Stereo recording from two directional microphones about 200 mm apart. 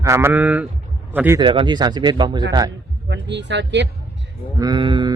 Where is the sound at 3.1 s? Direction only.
60° right (ahead or behind).